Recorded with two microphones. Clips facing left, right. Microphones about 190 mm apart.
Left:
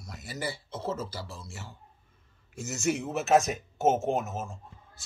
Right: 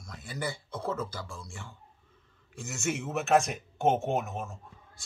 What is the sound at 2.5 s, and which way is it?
Speech, 40° left (ahead or behind).